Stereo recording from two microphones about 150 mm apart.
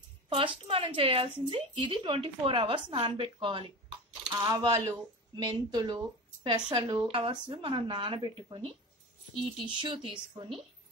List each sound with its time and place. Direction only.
0.3 s speech: 40° right (ahead or behind)